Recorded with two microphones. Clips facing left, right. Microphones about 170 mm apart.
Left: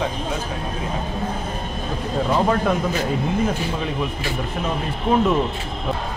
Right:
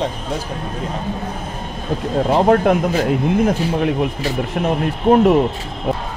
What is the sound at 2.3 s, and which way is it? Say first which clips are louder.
Speech: right 6 dB; 65° right (ahead or behind).